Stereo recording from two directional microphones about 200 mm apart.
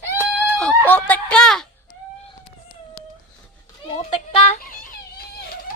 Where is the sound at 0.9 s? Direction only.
10° left (ahead or behind).